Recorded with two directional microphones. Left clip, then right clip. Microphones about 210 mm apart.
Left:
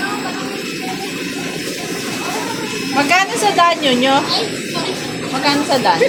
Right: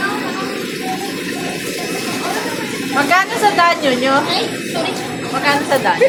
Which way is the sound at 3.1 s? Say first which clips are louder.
Right 1 dB; 30° left (ahead or behind).